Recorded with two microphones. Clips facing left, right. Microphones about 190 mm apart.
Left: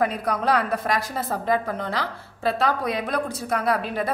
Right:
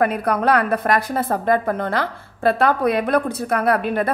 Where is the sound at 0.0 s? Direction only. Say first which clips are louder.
Right 5 dB; 60° right (ahead or behind).